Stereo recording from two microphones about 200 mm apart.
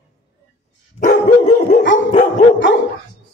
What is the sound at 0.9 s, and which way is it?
Dog, 45° left (ahead or behind).